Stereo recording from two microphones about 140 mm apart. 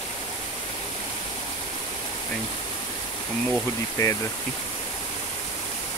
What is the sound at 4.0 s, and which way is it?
Speech, 25° left (ahead or behind).